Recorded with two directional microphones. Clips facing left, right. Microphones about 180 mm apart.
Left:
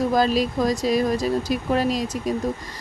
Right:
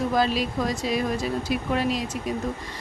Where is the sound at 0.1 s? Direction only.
40° left (ahead or behind).